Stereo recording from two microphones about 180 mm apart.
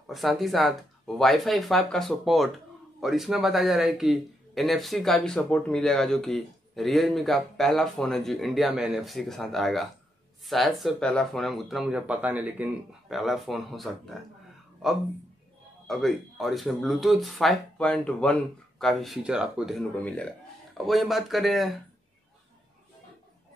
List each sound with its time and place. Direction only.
0.0 s a man's voice: centre (ahead or behind)
15.9 s a man's voice: centre (ahead or behind)